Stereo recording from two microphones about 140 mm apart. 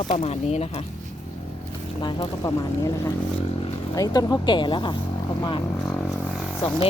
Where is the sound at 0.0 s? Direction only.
55° left (ahead or behind).